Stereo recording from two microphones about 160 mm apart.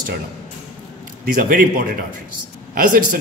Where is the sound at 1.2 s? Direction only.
60° right (ahead or behind).